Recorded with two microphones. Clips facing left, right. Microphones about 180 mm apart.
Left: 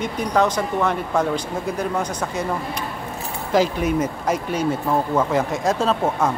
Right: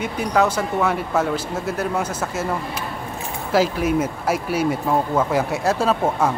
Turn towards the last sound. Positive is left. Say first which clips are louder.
# right 1 dB
turn(degrees=-10)  # may be behind; listen again after turning